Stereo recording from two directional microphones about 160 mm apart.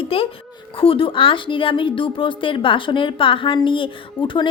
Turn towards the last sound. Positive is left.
turn(degrees=30)  # may be behind; listen again after turning